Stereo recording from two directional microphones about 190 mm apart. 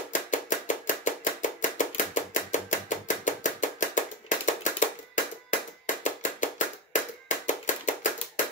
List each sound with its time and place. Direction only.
0.1 s chopping: 40° left (ahead or behind)